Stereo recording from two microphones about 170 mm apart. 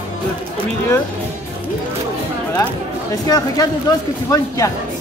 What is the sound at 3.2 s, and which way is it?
Speech, 20° left (ahead or behind).